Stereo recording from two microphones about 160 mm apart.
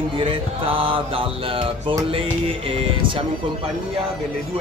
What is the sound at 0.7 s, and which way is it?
Speech, 35° right (ahead or behind).